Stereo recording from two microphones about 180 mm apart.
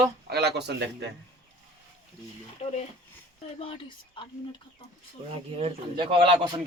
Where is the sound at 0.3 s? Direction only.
65° right (ahead or behind).